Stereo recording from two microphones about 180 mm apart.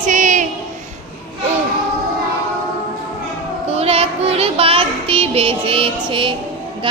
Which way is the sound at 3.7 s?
35° right (ahead or behind).